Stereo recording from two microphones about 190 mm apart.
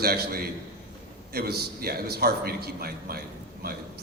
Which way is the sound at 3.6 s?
55° right (ahead or behind).